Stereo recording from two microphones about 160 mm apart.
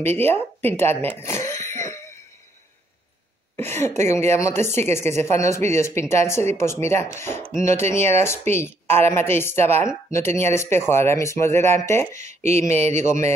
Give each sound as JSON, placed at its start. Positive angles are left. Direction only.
{"t": 0.2, "sound": "throat clearing", "side_deg": 15}
{"t": 3.5, "sound": "speech", "side_deg": 15}
{"t": 12.3, "sound": "speech", "side_deg": -45}